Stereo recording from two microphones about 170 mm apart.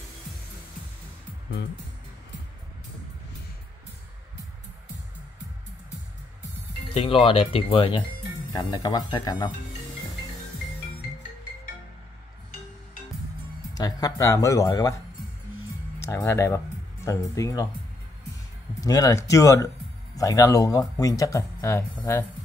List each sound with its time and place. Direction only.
6.9 s speech: 35° left (ahead or behind)
13.7 s speech: 20° left (ahead or behind)
16.0 s speech: 15° left (ahead or behind)
18.8 s speech: 20° left (ahead or behind)